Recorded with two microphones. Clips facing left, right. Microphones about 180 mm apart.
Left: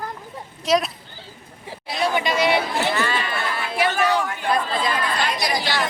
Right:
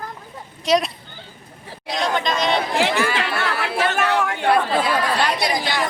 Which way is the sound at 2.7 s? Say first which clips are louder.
Right 3 dB; 90° right.